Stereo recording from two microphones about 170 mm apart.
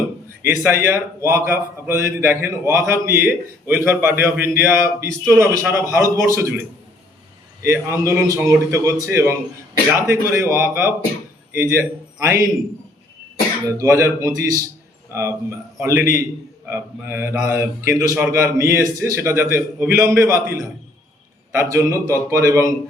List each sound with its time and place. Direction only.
0.6 s a man's voice: 15° right (ahead or behind)
7.6 s a man's voice: 15° right (ahead or behind)
13.7 s a man's voice: 15° right (ahead or behind)